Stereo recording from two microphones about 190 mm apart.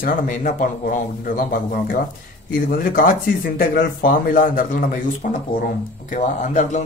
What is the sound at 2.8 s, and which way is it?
Speech, 45° left (ahead or behind).